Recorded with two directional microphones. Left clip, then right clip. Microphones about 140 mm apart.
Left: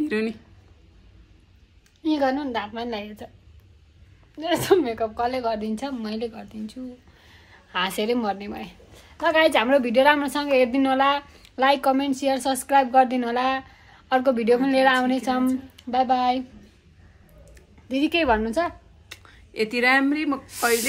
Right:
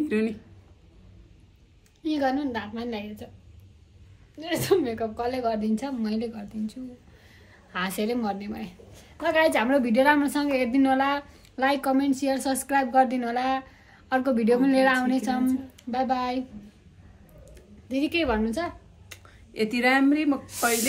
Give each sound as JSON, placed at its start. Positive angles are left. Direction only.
{"t": 0.0, "sound": "speech", "side_deg": 5}
{"t": 2.0, "sound": "a woman's voice", "side_deg": 45}
{"t": 4.4, "sound": "a woman's voice", "side_deg": 65}
{"t": 4.8, "sound": "a woman's voice", "side_deg": 35}
{"t": 5.1, "sound": "a woman's voice", "side_deg": 20}
{"t": 17.8, "sound": "a woman's voice", "side_deg": 70}
{"t": 19.0, "sound": "speech", "side_deg": 15}